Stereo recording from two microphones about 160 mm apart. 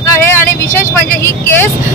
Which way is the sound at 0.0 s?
15° left (ahead or behind).